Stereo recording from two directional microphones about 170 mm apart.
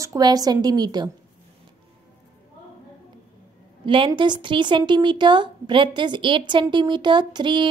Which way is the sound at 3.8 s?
30° right (ahead or behind).